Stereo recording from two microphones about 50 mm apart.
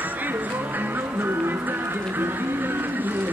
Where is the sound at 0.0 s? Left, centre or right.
Right.